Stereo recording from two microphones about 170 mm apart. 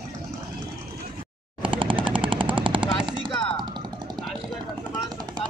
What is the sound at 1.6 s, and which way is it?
Machine gun, 30° right (ahead or behind).